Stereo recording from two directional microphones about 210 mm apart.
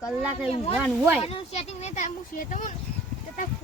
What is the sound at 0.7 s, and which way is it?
Speech, 5° right (ahead or behind).